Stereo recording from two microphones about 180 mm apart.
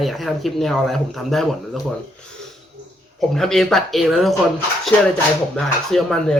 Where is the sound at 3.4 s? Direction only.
Centre (ahead or behind).